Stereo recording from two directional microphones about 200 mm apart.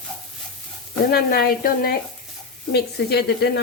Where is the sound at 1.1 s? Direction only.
50° left (ahead or behind).